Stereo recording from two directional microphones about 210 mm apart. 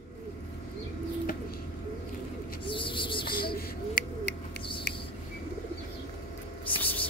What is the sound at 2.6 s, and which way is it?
Bird, 25° left (ahead or behind).